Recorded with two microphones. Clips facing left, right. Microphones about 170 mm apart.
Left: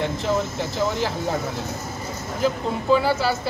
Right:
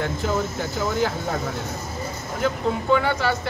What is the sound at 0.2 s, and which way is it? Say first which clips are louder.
Speech: left 1 dB; 30° left (ahead or behind).